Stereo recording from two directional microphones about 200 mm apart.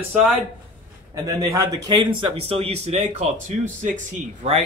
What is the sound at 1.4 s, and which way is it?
Speech, 15° right (ahead or behind).